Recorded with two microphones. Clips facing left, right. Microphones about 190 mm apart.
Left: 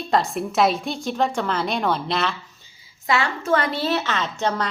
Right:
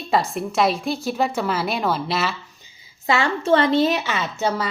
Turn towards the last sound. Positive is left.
turn(degrees=-5)  # may be behind; listen again after turning